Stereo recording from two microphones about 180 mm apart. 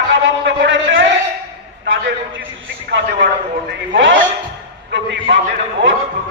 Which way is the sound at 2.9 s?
85° right.